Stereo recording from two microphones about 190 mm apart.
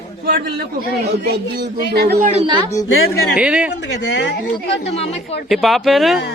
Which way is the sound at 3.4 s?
5° right (ahead or behind).